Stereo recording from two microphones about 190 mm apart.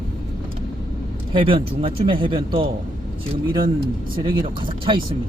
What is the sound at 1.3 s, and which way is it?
A man's voice, 30° right (ahead or behind).